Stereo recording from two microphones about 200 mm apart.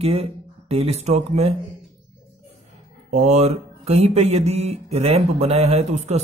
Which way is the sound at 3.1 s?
35° right (ahead or behind).